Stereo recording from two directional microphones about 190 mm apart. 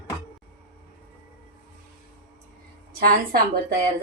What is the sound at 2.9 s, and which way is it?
Speech, 50° right (ahead or behind).